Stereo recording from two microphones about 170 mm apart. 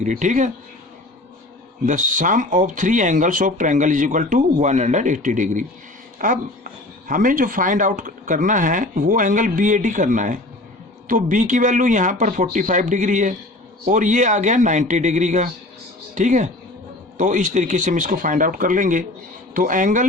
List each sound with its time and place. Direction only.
0.0 s speech: 45° right (ahead or behind)
1.9 s speech: 50° right (ahead or behind)